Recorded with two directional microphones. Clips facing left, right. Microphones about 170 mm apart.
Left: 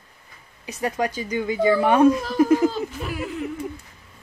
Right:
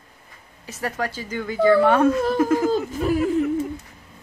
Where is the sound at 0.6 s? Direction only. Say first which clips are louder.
Left 3 dB; 15° left (ahead or behind).